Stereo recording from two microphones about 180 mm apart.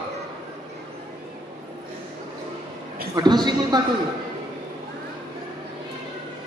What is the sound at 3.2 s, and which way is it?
Speech, 25° right (ahead or behind).